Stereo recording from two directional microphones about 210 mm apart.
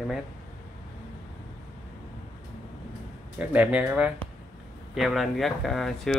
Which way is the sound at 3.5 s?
5° right (ahead or behind).